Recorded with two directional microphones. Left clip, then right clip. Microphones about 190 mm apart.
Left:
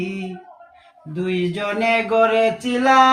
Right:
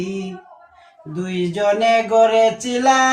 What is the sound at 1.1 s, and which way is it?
Speech, 25° right (ahead or behind).